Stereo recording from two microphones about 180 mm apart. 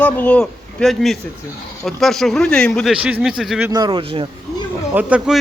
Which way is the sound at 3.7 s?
25° right (ahead or behind).